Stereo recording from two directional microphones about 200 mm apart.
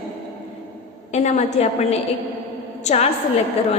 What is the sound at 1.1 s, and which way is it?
A woman's voice, 35° left (ahead or behind).